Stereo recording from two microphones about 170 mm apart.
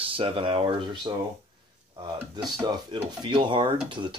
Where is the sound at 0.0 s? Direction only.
35° right (ahead or behind).